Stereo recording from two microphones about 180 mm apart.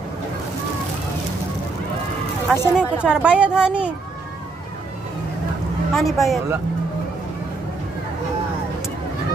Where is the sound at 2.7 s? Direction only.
5° right (ahead or behind).